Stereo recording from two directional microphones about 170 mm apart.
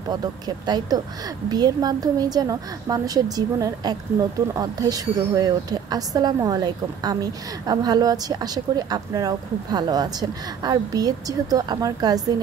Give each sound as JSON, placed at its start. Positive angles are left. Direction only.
{"t": 0.1, "sound": "a woman's voice", "side_deg": -25}